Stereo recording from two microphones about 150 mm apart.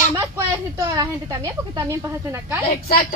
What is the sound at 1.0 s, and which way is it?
Speech, 25° right (ahead or behind).